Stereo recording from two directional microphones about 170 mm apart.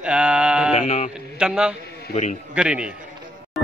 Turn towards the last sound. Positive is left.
turn(degrees=0)  # may be behind; listen again after turning